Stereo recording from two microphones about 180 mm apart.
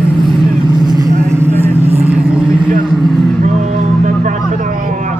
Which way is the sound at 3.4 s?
45° right (ahead or behind).